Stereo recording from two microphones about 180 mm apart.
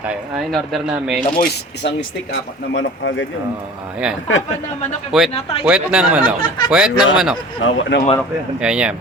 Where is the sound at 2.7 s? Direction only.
90° left.